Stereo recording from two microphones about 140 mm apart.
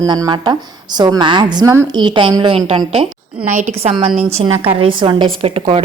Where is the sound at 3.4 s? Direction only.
60° right (ahead or behind).